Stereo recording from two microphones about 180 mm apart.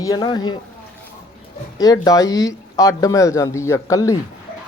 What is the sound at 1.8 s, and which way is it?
Speech, 20° left (ahead or behind).